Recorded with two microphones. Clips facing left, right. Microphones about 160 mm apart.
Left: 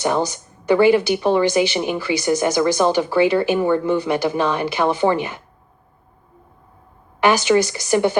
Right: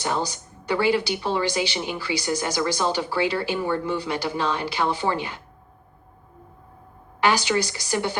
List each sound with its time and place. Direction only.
0.3 s speech: 55° left (ahead or behind)
7.2 s speech: 55° left (ahead or behind)